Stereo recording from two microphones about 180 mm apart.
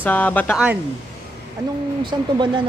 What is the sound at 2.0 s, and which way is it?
Speech, 25° right (ahead or behind).